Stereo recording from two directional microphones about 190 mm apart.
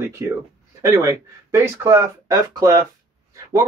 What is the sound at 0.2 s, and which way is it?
Speech, 15° right (ahead or behind).